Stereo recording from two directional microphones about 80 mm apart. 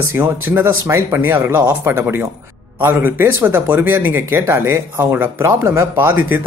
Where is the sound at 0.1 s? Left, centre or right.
Right.